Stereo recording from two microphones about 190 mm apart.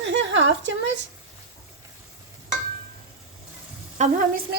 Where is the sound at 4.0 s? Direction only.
35° right (ahead or behind).